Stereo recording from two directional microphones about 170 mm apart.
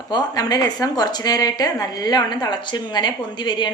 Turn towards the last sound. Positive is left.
turn(degrees=25)  # may be behind; listen again after turning